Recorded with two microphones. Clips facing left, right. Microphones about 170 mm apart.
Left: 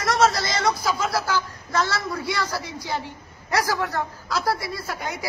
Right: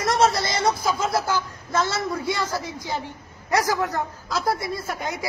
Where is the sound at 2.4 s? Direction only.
50° right (ahead or behind).